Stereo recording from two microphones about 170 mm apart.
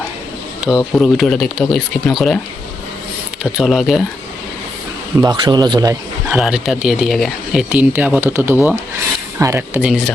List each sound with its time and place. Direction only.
0.6 s speech: 5° right (ahead or behind)
3.6 s speech: centre (ahead or behind)
5.2 s speech: 25° right (ahead or behind)
6.2 s speech: 5° right (ahead or behind)
9.7 s speech: 5° right (ahead or behind)